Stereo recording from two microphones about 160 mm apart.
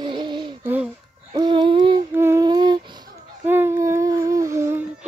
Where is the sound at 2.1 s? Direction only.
15° right (ahead or behind).